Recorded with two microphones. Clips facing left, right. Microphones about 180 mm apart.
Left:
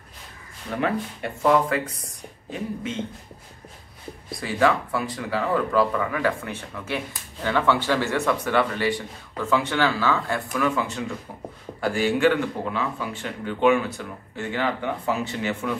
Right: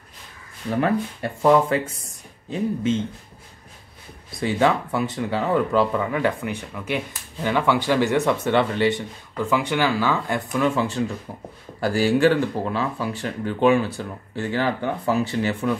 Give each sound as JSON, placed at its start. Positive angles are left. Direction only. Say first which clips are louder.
{"t": 1.4, "sound": "speech", "louder": "right 3 dB", "side_deg": -25}
{"t": 4.3, "sound": "speech", "louder": "right 2 dB", "side_deg": -25}